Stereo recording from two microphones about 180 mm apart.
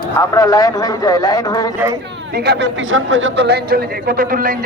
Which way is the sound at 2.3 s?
65° right (ahead or behind).